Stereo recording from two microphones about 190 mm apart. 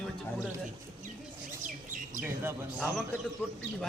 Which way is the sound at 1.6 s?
45° right (ahead or behind).